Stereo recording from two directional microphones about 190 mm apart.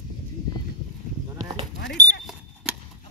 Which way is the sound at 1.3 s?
20° right (ahead or behind).